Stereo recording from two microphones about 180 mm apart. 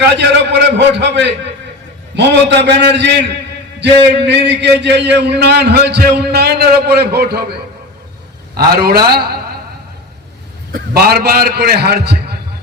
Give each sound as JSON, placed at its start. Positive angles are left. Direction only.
{"t": 0.0, "sound": "a man's voice", "side_deg": -75}
{"t": 8.5, "sound": "a man's voice", "side_deg": -60}
{"t": 10.7, "sound": "a man's voice", "side_deg": -60}